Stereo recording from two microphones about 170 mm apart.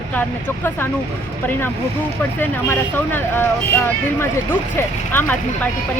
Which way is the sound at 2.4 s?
10° left (ahead or behind).